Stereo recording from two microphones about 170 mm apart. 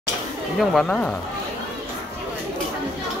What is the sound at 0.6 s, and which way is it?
Speech, 5° left (ahead or behind).